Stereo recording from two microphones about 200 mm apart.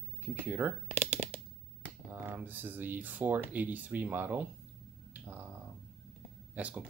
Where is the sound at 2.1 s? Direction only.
10° right (ahead or behind).